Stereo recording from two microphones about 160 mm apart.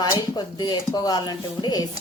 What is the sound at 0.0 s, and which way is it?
Speech, 25° left (ahead or behind).